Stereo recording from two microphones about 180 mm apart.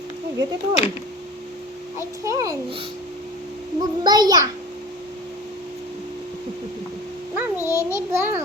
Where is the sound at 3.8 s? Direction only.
20° right (ahead or behind).